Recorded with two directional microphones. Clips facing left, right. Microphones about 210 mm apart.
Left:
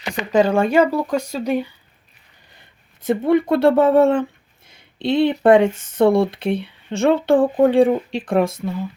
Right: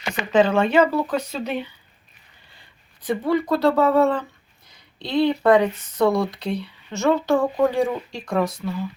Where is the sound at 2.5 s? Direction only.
25° left (ahead or behind).